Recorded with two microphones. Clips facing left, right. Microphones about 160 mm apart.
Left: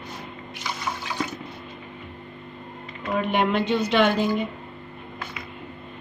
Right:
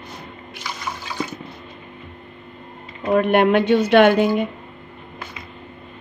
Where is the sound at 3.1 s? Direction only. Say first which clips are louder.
Right 7 dB; 65° right (ahead or behind).